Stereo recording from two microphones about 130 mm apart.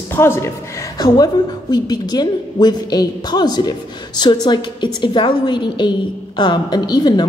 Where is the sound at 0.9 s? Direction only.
30° left (ahead or behind).